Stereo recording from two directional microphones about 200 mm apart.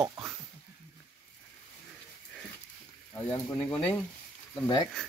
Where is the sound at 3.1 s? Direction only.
15° left (ahead or behind).